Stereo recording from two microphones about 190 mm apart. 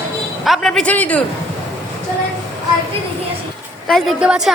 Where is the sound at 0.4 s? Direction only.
Centre (ahead or behind).